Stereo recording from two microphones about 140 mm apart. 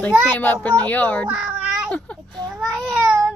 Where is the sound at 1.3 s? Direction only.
10° right (ahead or behind).